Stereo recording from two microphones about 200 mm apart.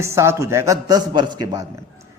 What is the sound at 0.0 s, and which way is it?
A man's voice, 15° right (ahead or behind).